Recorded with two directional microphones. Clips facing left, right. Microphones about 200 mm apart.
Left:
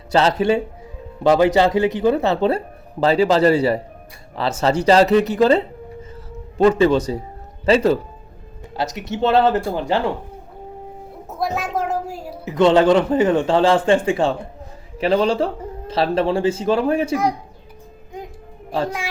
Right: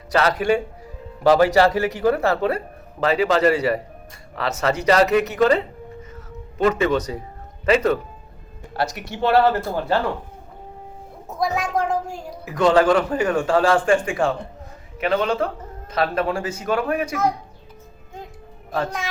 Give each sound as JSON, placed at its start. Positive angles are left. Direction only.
{"t": 0.1, "sound": "a man's voice", "side_deg": 25}
{"t": 6.7, "sound": "a man's voice", "side_deg": 30}
{"t": 11.3, "sound": "music", "side_deg": 5}
{"t": 12.5, "sound": "a man's voice", "side_deg": 25}